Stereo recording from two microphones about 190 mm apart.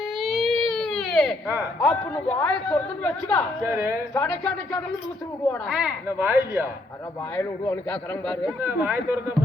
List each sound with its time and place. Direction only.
0.2 s baby cry: centre (ahead or behind)
1.5 s speech: 10° right (ahead or behind)
1.9 s a man's voice: 5° left (ahead or behind)
3.7 s speech: 15° right (ahead or behind)
4.1 s a man's voice: 10° left (ahead or behind)
5.7 s speech: 10° right (ahead or behind)
7.3 s a man's voice: 5° left (ahead or behind)
8.6 s speech: 10° right (ahead or behind)